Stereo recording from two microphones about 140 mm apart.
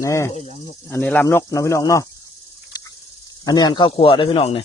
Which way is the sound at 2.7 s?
30° left (ahead or behind).